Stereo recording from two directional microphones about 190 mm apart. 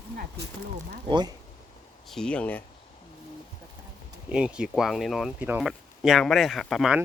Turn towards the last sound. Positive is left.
turn(degrees=0)  # may be behind; listen again after turning